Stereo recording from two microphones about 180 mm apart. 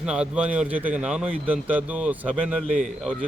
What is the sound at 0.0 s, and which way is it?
A man's voice, 5° right (ahead or behind).